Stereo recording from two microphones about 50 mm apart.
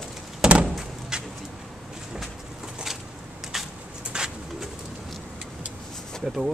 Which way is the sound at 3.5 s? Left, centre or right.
Centre.